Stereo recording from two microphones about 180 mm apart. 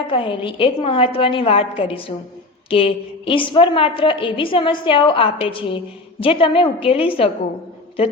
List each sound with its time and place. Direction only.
0.1 s a woman's voice: 30° left (ahead or behind)